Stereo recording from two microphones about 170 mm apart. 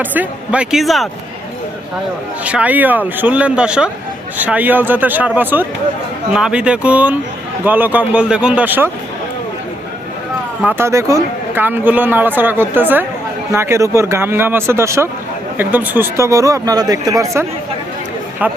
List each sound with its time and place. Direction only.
0.0 s a man's voice: 10° right (ahead or behind)
2.4 s a man's voice: 5° right (ahead or behind)
10.6 s a man's voice: 10° right (ahead or behind)